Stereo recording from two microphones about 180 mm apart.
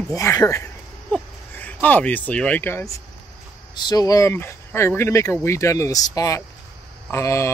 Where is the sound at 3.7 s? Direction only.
25° left (ahead or behind).